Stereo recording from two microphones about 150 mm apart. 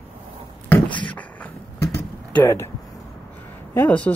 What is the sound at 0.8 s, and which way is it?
Beatboxing, 30° left (ahead or behind).